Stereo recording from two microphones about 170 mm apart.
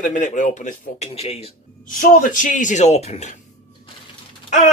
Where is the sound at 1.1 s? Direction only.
35° left (ahead or behind).